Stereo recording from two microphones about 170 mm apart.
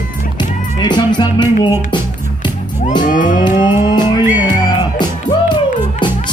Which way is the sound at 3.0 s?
50° left (ahead or behind).